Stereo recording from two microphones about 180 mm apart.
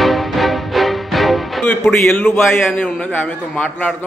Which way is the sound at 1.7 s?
10° left (ahead or behind).